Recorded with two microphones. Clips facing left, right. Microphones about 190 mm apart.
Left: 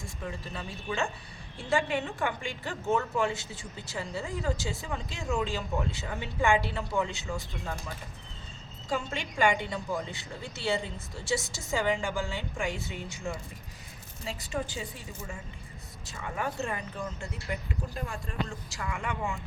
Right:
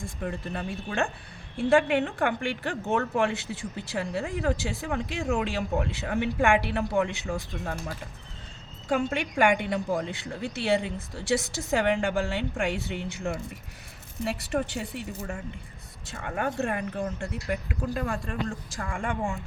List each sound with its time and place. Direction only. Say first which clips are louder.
0.2 s a woman's voice: right 6 dB; 55° right (ahead or behind)